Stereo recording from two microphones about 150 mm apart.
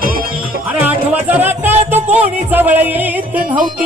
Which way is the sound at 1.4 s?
15° right (ahead or behind).